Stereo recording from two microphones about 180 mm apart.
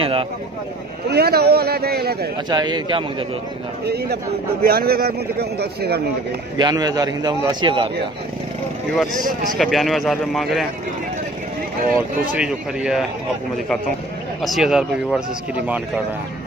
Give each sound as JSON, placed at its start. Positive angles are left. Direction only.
{"t": 0.0, "sound": "a sound", "side_deg": -30}
{"t": 1.0, "sound": "a man's voice", "side_deg": -60}
{"t": 2.5, "sound": "a man's voice", "side_deg": -25}
{"t": 3.8, "sound": "a man's voice", "side_deg": -65}
{"t": 6.6, "sound": "a man's voice", "side_deg": -20}
{"t": 9.2, "sound": "speech", "side_deg": 0}
{"t": 12.4, "sound": "speech", "side_deg": -5}
{"t": 14.4, "sound": "speech", "side_deg": 0}